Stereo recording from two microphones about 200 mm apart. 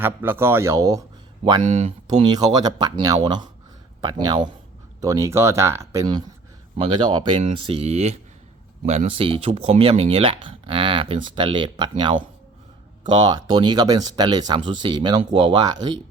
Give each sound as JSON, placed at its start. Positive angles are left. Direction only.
{"t": 0.0, "sound": "speech", "side_deg": -10}
{"t": 2.2, "sound": "speech", "side_deg": -20}